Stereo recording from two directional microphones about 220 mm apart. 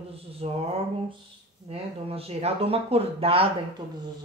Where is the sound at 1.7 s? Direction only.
25° right (ahead or behind).